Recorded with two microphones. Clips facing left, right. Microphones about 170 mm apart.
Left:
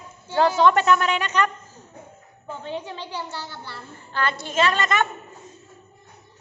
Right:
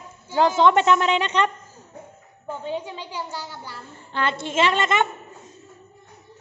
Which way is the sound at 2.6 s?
10° right (ahead or behind).